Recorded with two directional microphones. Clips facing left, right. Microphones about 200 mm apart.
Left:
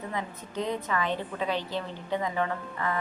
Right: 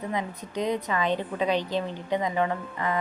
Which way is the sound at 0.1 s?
15° right (ahead or behind).